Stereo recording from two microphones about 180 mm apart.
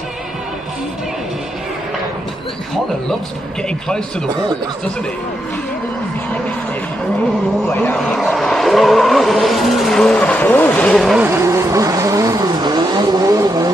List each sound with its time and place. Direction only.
7.9 s vehicle: centre (ahead or behind)
11.2 s vehicle: 15° right (ahead or behind)